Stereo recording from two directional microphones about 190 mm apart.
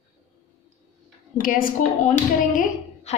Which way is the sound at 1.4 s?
50° left (ahead or behind).